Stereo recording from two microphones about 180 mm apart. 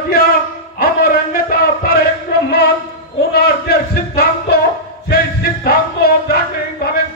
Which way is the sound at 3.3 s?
60° left (ahead or behind).